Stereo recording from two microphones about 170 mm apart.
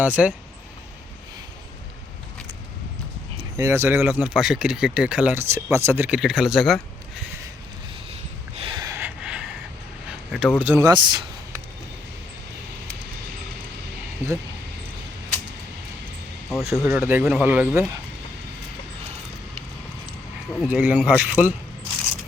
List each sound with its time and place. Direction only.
0.0 s speech: 10° right (ahead or behind)
3.6 s speech: 15° right (ahead or behind)
8.1 s a sound: 35° right (ahead or behind)
9.0 s a sound: 5° right (ahead or behind)
10.6 s speech: 10° right (ahead or behind)
10.8 s speech: 25° right (ahead or behind)
16.5 s speech: centre (ahead or behind)
20.7 s speech: 10° right (ahead or behind)